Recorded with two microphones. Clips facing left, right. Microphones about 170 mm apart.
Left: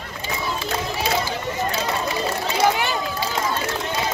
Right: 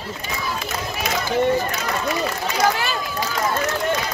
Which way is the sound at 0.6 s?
30° left (ahead or behind).